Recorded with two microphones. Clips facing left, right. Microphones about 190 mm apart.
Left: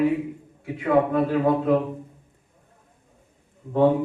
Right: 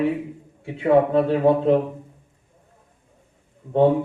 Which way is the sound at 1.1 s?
25° right (ahead or behind).